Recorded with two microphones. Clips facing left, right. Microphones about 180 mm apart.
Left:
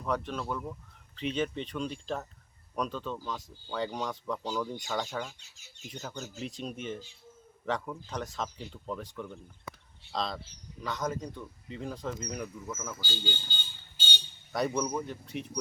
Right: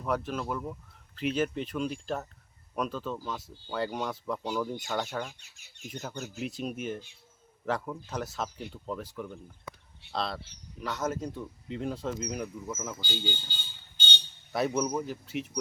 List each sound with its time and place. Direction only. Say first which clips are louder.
0.0 s speech: right 2 dB; 5° right (ahead or behind)
12.6 s speech: right 2 dB; 15° right (ahead or behind)
14.5 s speech: right 2 dB; 5° right (ahead or behind)